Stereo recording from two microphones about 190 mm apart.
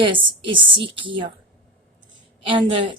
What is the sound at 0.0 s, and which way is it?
A woman's voice, 25° right (ahead or behind).